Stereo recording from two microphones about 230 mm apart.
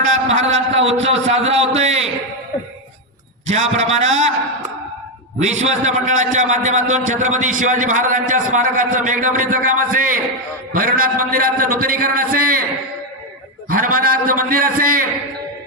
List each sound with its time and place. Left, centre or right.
0.0 s a man's voice: right
3.4 s a man's voice: right
5.4 s a man's voice: right
13.7 s a man's voice: right